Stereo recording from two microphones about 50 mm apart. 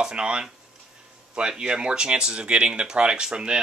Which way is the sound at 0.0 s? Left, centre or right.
Centre.